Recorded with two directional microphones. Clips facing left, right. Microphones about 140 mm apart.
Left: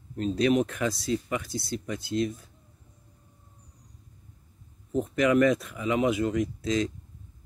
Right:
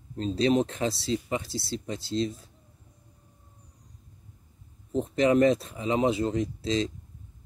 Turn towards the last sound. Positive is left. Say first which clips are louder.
# even
turn(degrees=-30)  # may be behind; listen again after turning